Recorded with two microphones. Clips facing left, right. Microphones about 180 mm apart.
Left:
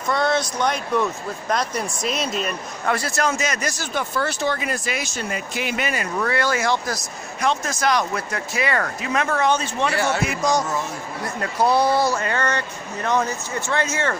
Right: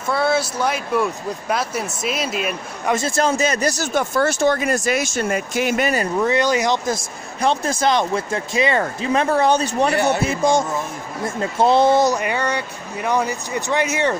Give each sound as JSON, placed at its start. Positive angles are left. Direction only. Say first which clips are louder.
{"t": 0.1, "sound": "speech", "louder": "right 2 dB", "side_deg": -5}
{"t": 2.9, "sound": "speech", "louder": "right 4 dB", "side_deg": -25}
{"t": 6.1, "sound": "speech", "louder": "right 3 dB", "side_deg": -20}
{"t": 7.4, "sound": "speech", "louder": "right 3 dB", "side_deg": -30}
{"t": 9.9, "sound": "speech", "louder": "right 4 dB", "side_deg": -20}